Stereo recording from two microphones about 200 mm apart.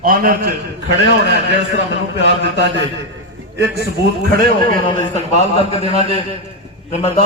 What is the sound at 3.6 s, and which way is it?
Speech, 55° right (ahead or behind).